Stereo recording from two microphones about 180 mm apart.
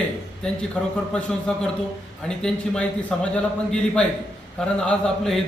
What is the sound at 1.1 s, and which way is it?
A man's voice, 5° left (ahead or behind).